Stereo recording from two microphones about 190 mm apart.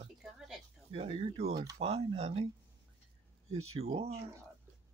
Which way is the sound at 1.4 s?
60° right (ahead or behind).